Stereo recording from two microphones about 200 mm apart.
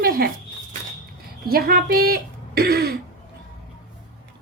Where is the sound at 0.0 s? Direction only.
45° right (ahead or behind).